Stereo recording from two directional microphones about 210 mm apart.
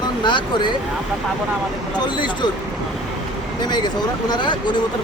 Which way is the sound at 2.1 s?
20° left (ahead or behind).